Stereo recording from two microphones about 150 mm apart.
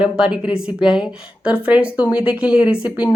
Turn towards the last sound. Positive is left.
turn(degrees=-10)  # may be behind; listen again after turning